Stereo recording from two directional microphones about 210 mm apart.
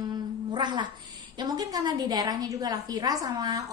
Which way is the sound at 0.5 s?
20° right (ahead or behind).